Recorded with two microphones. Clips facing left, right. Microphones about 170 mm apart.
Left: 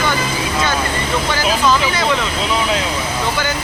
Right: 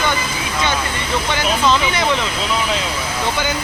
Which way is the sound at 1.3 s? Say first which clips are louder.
Even; 20° right (ahead or behind).